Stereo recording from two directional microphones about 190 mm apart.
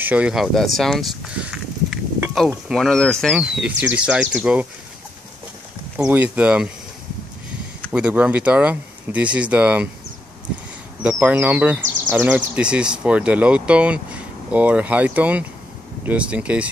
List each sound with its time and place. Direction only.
0.0 s speech: 5° right (ahead or behind)
5.9 s speech: 10° right (ahead or behind)
7.9 s speech: 5° right (ahead or behind)
11.0 s speech: 5° right (ahead or behind)